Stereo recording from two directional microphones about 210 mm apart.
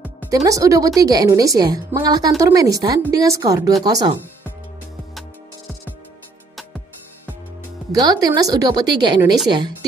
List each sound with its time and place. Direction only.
0.3 s a woman's voice: 15° right (ahead or behind)
7.9 s a woman's voice: 20° right (ahead or behind)